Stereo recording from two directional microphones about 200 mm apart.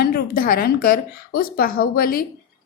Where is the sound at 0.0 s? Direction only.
50° left (ahead or behind).